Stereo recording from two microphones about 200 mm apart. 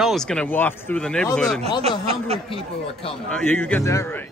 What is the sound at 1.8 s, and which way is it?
Speech, 30° right (ahead or behind).